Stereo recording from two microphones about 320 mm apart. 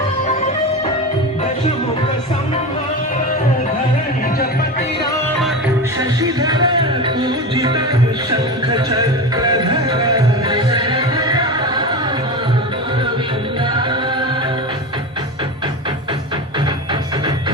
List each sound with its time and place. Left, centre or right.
6.0 s music: centre
13.7 s music: centre